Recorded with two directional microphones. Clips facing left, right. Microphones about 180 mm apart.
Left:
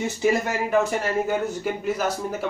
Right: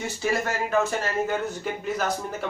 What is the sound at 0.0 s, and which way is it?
Speech, 15° left (ahead or behind).